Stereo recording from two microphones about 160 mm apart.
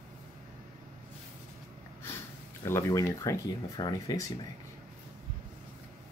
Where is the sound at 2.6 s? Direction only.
15° left (ahead or behind).